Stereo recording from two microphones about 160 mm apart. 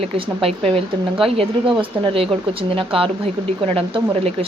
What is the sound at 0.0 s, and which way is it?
Speech, 35° right (ahead or behind).